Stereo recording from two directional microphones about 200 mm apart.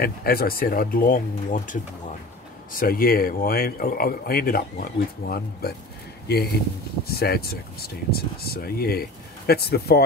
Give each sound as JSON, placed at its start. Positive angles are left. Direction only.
{"t": 0.0, "sound": "speech", "side_deg": 50}